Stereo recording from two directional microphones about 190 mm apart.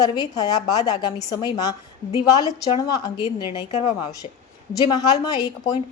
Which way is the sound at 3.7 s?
35° left (ahead or behind).